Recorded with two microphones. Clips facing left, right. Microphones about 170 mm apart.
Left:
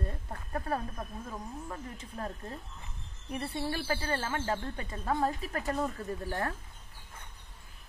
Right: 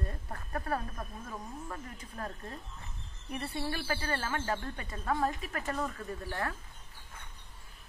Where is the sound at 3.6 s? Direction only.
25° left (ahead or behind).